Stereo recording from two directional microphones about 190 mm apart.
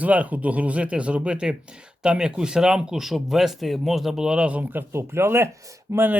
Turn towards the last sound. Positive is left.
turn(degrees=-15)  # may be behind; listen again after turning